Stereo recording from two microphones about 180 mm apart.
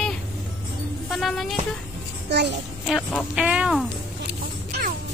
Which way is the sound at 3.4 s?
5° right (ahead or behind).